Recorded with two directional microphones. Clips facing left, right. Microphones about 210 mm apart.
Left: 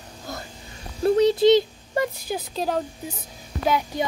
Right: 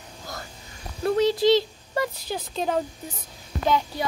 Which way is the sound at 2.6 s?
Centre (ahead or behind).